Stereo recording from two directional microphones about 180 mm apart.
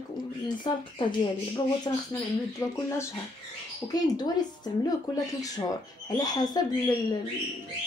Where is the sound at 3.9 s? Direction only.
20° left (ahead or behind).